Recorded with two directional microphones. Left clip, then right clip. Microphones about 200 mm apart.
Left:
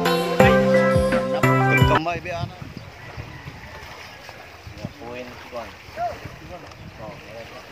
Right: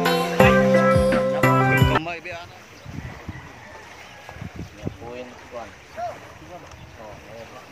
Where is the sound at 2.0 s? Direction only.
30° left (ahead or behind).